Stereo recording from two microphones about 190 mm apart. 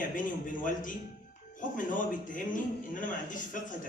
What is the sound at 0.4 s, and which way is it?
A man's voice, 45° left (ahead or behind).